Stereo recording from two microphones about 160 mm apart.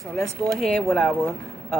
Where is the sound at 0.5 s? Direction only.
5° left (ahead or behind).